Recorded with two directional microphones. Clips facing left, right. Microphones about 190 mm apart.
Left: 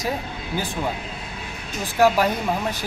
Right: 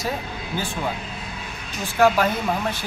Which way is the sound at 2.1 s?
15° left (ahead or behind).